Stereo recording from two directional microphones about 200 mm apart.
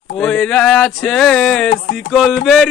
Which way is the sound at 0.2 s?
5° left (ahead or behind).